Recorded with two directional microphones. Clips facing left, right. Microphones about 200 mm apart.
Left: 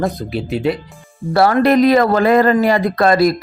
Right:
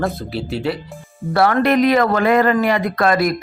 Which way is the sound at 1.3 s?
35° left (ahead or behind).